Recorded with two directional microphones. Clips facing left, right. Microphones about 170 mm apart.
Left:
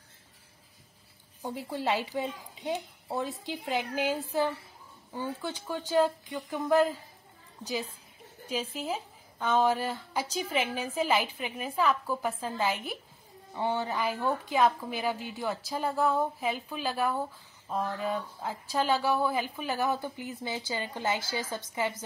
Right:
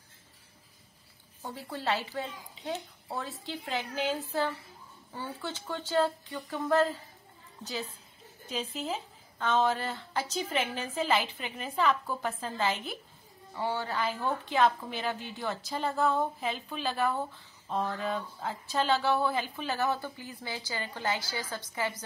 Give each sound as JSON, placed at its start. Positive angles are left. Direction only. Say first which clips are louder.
{"t": 1.4, "sound": "a woman's voice", "louder": "left 3 dB", "side_deg": 15}
{"t": 8.5, "sound": "a woman's voice", "louder": "left 2 dB", "side_deg": 10}